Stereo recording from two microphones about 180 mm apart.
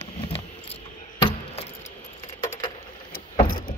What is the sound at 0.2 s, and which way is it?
Keys jangling, 30° left (ahead or behind).